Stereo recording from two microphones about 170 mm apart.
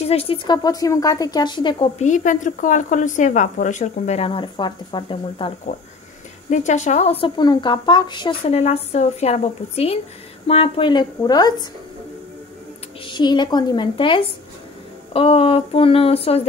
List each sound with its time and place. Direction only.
0.0 s a woman's voice: 35° left (ahead or behind)
2.0 s a woman's voice: 45° left (ahead or behind); by 5.5 s 30° left (ahead or behind)
5.7 s a woman's voice: 45° left (ahead or behind); by 11.6 s 25° left (ahead or behind)
13.0 s a woman's voice: 25° left (ahead or behind)